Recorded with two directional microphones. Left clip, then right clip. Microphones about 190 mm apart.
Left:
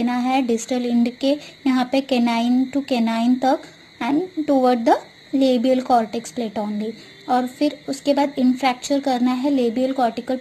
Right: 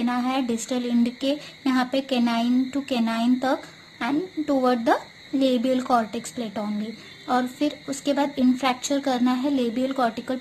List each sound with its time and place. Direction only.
0.0 s a woman's voice: 15° left (ahead or behind)